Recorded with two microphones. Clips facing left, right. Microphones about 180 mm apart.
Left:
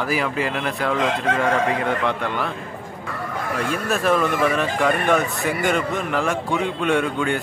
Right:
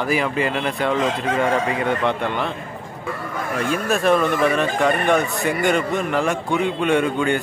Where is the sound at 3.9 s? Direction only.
5° left (ahead or behind).